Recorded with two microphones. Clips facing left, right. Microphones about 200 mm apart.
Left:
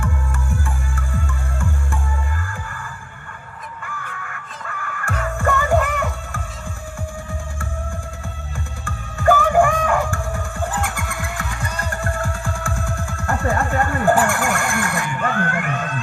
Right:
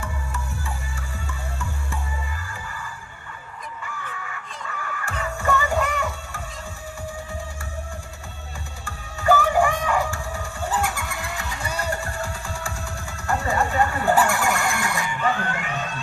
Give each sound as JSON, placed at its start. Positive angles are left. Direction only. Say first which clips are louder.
{"t": 0.6, "sound": "music", "louder": "left 5 dB", "side_deg": 50}
{"t": 3.8, "sound": "fowl", "louder": "left 2 dB", "side_deg": 55}
{"t": 4.8, "sound": "music", "louder": "left 4 dB", "side_deg": 55}
{"t": 8.8, "sound": "music", "louder": "left 8 dB", "side_deg": 50}